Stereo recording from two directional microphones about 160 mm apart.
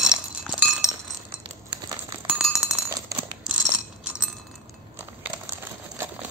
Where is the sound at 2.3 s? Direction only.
5° right (ahead or behind).